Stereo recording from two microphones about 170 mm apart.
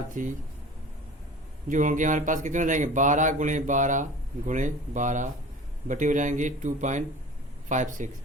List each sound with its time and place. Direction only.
0.1 s speech: 50° right (ahead or behind)
1.7 s speech: 50° right (ahead or behind)